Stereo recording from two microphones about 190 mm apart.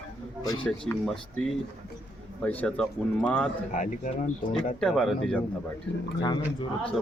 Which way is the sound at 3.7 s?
40° left (ahead or behind).